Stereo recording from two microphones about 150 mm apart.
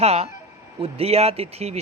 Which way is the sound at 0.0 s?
45° right (ahead or behind).